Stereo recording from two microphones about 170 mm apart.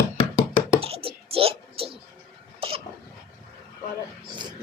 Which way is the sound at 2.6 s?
35° right (ahead or behind).